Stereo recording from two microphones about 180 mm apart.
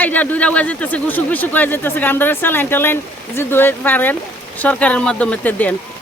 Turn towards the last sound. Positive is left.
turn(degrees=10)  # may be behind; listen again after turning